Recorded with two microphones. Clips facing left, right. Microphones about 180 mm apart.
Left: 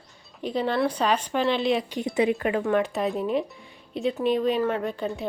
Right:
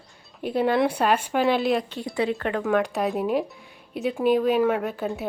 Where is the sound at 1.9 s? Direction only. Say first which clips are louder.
Left 2 dB; 20° left (ahead or behind).